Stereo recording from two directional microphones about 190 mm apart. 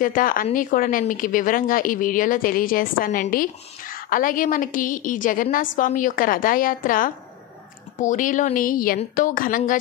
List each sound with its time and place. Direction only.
0.0 s a woman's voice: 45° left (ahead or behind)